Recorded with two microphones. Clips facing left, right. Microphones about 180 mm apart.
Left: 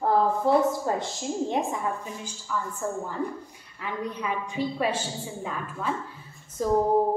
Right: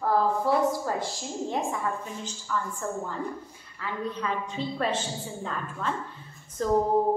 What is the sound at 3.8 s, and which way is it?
A woman's voice, 15° left (ahead or behind).